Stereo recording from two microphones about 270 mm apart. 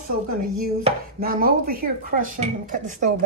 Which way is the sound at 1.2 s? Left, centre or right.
Right.